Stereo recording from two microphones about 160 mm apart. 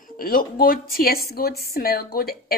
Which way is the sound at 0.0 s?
65° left (ahead or behind).